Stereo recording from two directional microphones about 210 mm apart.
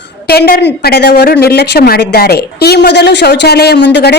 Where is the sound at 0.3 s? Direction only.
45° left (ahead or behind).